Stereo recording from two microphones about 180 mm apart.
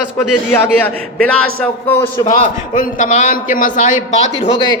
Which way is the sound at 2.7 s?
40° left (ahead or behind).